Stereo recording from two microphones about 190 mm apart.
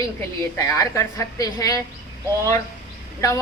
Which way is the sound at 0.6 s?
15° left (ahead or behind).